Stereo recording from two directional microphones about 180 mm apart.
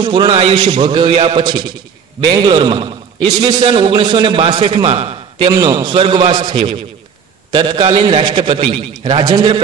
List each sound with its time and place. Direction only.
0.0 s a man's voice: 25° right (ahead or behind)